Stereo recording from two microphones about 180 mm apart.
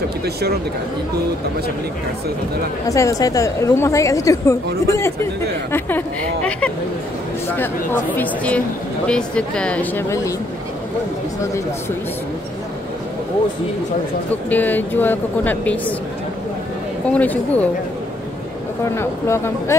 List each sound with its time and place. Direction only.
2.9 s speech: 20° left (ahead or behind)
14.5 s speech: 10° left (ahead or behind)
17.1 s speech: 10° left (ahead or behind)
18.9 s speech: 15° left (ahead or behind)